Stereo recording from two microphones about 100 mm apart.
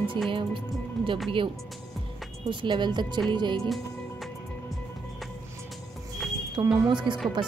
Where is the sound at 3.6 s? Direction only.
Centre (ahead or behind).